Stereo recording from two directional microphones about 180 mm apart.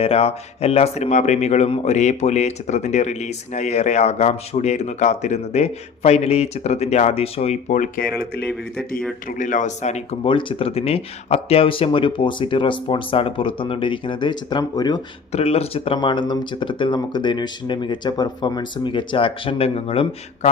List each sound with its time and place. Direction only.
0.0 s speech: 35° left (ahead or behind)
9.4 s speech: 45° left (ahead or behind); by 15.0 s 20° left (ahead or behind)
15.3 s speech: 35° left (ahead or behind)